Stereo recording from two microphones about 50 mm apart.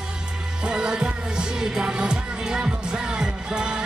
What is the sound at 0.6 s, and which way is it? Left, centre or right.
Music, centre.